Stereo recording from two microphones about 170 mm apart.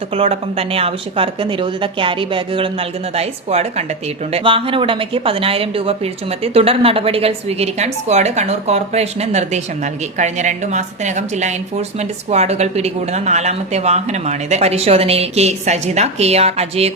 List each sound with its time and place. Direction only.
0.1 s speech: 35° right (ahead or behind)